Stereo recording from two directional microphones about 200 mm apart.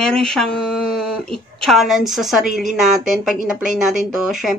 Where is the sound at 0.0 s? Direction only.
5° left (ahead or behind).